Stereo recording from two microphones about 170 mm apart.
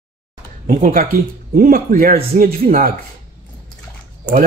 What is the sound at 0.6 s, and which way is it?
Speech, 50° right (ahead or behind).